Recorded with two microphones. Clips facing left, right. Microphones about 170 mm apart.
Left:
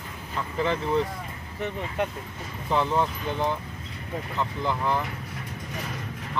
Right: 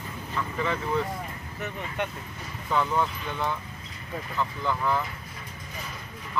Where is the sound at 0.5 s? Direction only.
30° left (ahead or behind).